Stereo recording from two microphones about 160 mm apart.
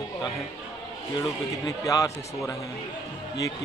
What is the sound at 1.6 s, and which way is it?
Speech, 20° left (ahead or behind).